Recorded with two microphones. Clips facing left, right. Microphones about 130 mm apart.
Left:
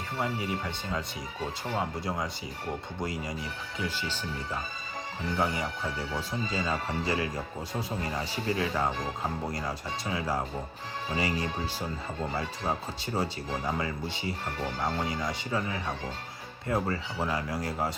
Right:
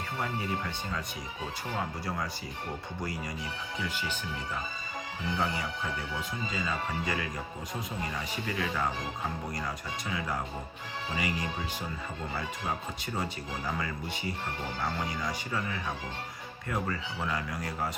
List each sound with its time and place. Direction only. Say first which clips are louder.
0.2 s speech: left 2 dB; 20° left (ahead or behind)
5.4 s speech: left 4 dB; 20° left (ahead or behind)
6.1 s speech: left 3 dB; 35° left (ahead or behind)
13.1 s speech: left 5 dB; 25° left (ahead or behind)